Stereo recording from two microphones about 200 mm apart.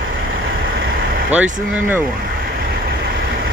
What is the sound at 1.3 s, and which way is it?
Speech, 10° right (ahead or behind).